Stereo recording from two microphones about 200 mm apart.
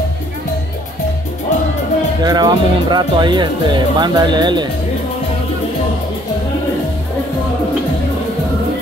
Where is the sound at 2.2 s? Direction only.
20° right (ahead or behind).